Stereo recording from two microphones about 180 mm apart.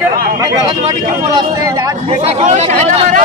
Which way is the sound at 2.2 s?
40° right (ahead or behind).